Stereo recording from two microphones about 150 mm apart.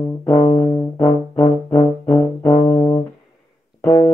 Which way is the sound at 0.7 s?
25° left (ahead or behind).